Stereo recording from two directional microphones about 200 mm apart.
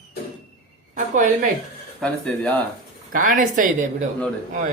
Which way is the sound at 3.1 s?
45° right (ahead or behind).